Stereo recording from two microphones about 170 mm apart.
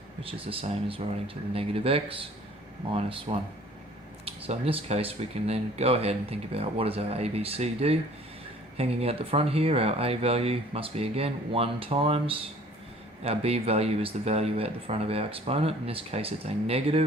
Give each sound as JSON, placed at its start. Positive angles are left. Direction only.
{"t": 0.2, "sound": "speech", "side_deg": -35}